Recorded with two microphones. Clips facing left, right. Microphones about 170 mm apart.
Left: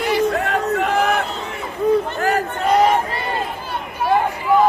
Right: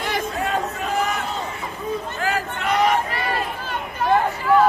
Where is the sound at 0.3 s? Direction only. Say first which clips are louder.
Left 5 dB; 65° left (ahead or behind).